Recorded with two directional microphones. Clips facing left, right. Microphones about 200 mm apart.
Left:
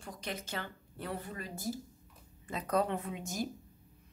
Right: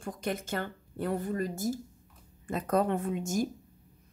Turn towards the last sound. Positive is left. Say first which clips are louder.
# right 7 dB
turn(degrees=-45)  # may be behind; listen again after turning